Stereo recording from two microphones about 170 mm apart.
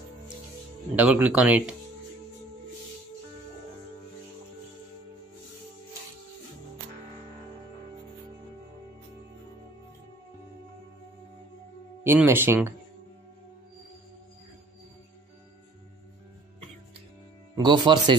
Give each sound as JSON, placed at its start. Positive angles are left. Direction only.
{"t": 0.9, "sound": "speech", "side_deg": -10}
{"t": 12.0, "sound": "speech", "side_deg": -15}
{"t": 17.6, "sound": "speech", "side_deg": -25}